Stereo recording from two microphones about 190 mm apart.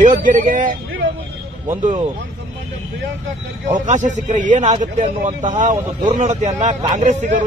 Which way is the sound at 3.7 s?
40° right (ahead or behind).